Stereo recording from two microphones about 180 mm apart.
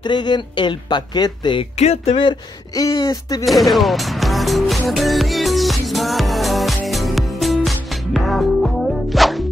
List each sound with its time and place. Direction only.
0.0 s speech: 25° left (ahead or behind)
3.4 s music: centre (ahead or behind)